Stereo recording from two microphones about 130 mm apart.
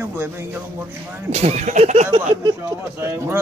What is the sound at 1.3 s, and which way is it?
Speech, 55° right (ahead or behind).